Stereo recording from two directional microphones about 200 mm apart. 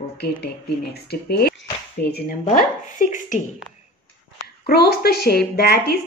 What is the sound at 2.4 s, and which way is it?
Speech, 40° left (ahead or behind).